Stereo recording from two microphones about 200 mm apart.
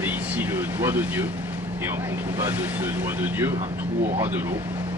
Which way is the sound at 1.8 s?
10° right (ahead or behind).